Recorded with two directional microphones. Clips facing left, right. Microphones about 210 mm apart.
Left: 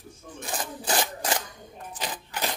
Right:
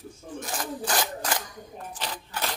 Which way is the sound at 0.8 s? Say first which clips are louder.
Left 2 dB; 25° left (ahead or behind).